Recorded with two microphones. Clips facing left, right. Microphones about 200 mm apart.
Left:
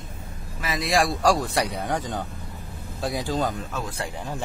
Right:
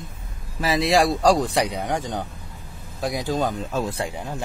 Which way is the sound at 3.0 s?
15° right (ahead or behind).